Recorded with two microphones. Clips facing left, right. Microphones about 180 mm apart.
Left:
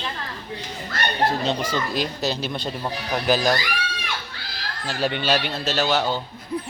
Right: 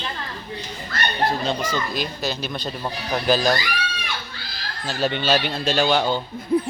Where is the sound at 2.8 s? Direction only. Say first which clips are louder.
Right 1 dB; 15° left (ahead or behind).